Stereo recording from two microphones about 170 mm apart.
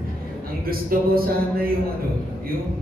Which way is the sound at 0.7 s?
60° right (ahead or behind).